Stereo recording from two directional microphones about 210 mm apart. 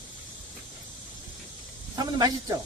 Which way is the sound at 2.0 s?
20° right (ahead or behind).